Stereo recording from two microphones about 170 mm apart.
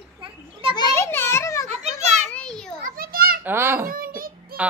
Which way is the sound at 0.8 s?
20° left (ahead or behind).